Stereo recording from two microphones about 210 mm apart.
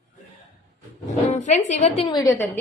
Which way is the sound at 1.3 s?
35° left (ahead or behind).